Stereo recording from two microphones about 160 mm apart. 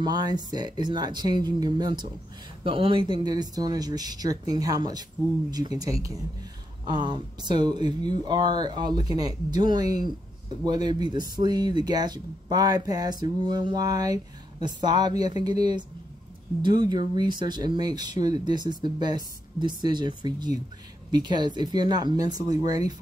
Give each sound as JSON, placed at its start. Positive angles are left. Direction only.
{"t": 0.0, "sound": "speech", "side_deg": -25}
{"t": 16.6, "sound": "speech", "side_deg": -25}